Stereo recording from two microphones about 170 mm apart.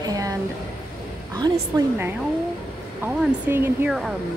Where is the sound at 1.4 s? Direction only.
20° right (ahead or behind).